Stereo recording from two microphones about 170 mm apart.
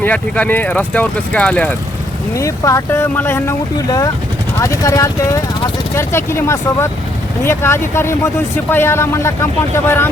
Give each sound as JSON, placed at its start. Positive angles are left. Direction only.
{"t": 0.0, "sound": "speech", "side_deg": 10}
{"t": 2.3, "sound": "speech", "side_deg": 20}